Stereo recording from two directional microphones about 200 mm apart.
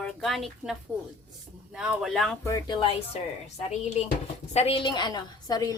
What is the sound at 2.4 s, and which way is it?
Speech, 15° left (ahead or behind).